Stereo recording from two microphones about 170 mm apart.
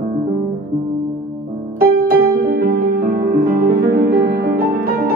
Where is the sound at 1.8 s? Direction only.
65° right (ahead or behind).